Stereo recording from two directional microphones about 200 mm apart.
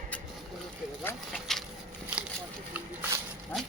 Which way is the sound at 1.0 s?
5° left (ahead or behind).